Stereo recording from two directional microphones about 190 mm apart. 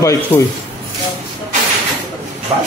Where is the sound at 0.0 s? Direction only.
15° left (ahead or behind).